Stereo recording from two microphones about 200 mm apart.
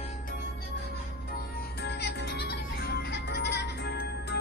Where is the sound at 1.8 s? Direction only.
55° left (ahead or behind).